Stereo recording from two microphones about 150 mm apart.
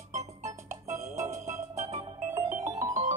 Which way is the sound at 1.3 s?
50° right (ahead or behind).